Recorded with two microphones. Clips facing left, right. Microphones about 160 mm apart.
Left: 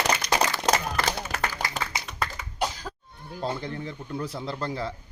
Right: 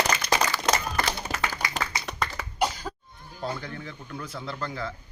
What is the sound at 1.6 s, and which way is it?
Clapping, 90° left.